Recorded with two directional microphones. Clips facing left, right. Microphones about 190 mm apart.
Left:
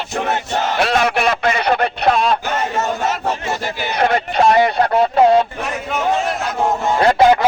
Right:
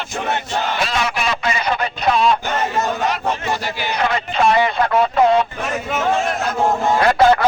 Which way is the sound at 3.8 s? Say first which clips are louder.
Left 6 dB; 45° left (ahead or behind).